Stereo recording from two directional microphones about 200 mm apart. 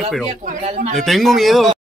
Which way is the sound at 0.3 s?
40° right (ahead or behind).